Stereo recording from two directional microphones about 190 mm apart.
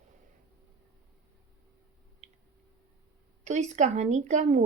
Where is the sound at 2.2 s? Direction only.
35° right (ahead or behind).